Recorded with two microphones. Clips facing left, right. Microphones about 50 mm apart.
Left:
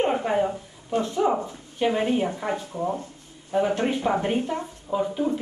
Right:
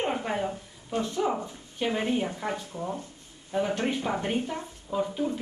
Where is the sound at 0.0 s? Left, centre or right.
Centre.